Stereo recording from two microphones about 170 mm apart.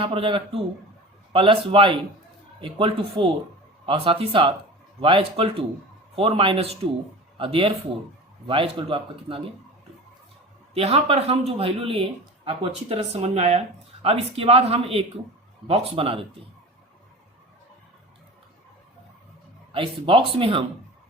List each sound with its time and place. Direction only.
0.0 s speech: 35° right (ahead or behind)
10.8 s speech: 35° right (ahead or behind)
19.7 s speech: 30° right (ahead or behind)